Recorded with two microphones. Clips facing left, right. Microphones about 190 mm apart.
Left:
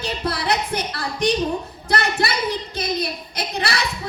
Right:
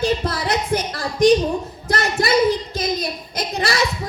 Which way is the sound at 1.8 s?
60° left (ahead or behind).